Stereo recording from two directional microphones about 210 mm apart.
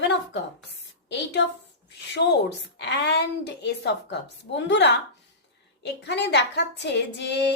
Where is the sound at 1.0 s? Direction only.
55° left (ahead or behind).